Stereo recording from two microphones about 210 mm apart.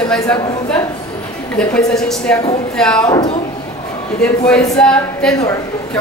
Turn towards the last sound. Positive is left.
turn(degrees=15)  # may be behind; listen again after turning